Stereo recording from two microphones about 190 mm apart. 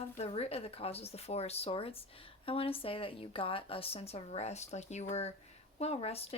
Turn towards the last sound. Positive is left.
turn(degrees=30)  # may be behind; listen again after turning